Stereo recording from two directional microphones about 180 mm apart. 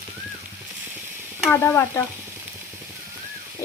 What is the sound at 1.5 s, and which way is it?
Speech, 10° left (ahead or behind).